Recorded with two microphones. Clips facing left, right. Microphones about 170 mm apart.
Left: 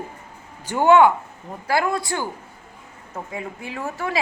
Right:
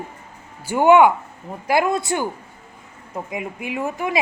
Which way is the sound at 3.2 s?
15° right (ahead or behind).